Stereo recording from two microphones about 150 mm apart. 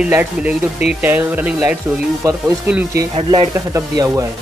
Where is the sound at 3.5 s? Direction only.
20° right (ahead or behind).